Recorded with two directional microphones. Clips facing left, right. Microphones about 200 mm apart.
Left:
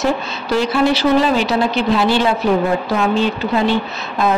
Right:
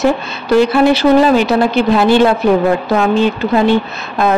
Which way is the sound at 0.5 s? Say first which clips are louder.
Right 6 dB; 55° right (ahead or behind).